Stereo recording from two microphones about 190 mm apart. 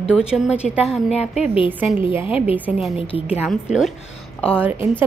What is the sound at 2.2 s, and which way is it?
Speech, 30° left (ahead or behind).